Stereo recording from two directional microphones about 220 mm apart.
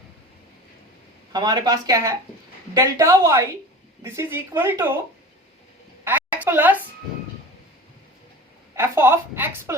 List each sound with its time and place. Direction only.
1.3 s a woman's voice: 20° right (ahead or behind)
6.1 s a sound: 10° right (ahead or behind)
8.7 s a woman's voice: 10° right (ahead or behind)